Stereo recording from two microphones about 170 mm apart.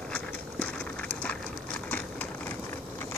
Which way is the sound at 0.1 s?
10° left (ahead or behind).